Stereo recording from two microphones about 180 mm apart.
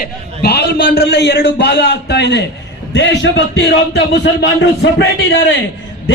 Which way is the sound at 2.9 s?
80° left.